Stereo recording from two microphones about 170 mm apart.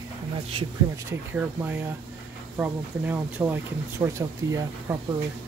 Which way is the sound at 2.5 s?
10° right (ahead or behind).